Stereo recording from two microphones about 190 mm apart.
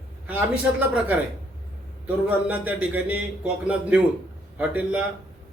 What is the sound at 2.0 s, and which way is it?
A man's voice, 10° right (ahead or behind).